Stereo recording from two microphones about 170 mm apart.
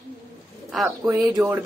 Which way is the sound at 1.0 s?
20° right (ahead or behind).